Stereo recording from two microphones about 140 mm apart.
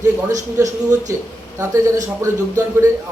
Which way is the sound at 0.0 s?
25° right (ahead or behind).